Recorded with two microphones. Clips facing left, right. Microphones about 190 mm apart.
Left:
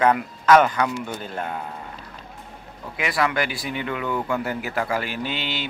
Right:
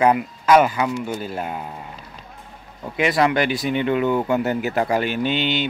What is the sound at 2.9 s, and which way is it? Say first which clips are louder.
Speech: right 5 dB; 25° right (ahead or behind).